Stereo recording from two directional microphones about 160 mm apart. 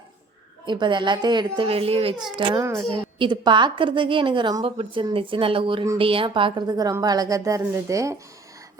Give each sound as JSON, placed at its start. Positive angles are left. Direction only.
{"t": 0.6, "sound": "a woman's voice", "side_deg": -30}